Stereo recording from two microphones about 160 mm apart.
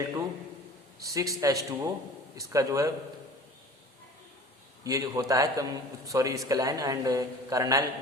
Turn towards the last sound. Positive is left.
turn(degrees=-20)  # may be behind; listen again after turning